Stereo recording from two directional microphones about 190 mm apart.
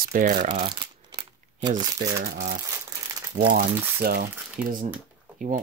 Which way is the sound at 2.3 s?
55° right (ahead or behind).